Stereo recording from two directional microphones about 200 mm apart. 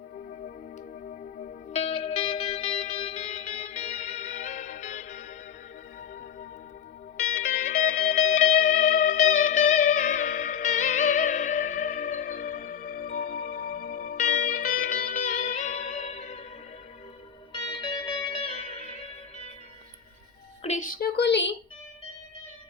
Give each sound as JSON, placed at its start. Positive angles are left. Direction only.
{"t": 1.0, "sound": "music", "side_deg": 45}
{"t": 1.7, "sound": "music", "side_deg": 30}
{"t": 7.3, "sound": "music", "side_deg": 45}
{"t": 17.5, "sound": "music", "side_deg": 25}
{"t": 20.7, "sound": "a sound", "side_deg": 40}